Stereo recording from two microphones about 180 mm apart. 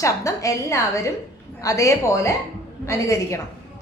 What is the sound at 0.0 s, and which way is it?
A woman's voice, 15° left (ahead or behind).